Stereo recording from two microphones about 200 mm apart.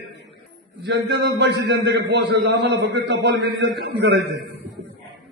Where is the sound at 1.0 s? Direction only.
55° right (ahead or behind).